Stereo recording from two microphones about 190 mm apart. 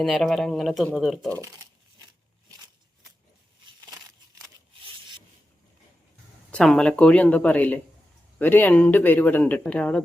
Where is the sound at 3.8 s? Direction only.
20° right (ahead or behind).